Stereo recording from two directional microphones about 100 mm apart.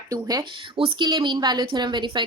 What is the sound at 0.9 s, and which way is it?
Speech, 50° right (ahead or behind).